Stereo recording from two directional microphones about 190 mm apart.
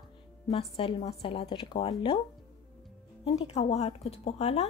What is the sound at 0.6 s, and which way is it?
A woman's voice, 30° left (ahead or behind).